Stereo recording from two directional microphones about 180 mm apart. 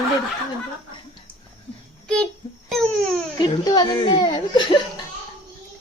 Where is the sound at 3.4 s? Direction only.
20° left (ahead or behind).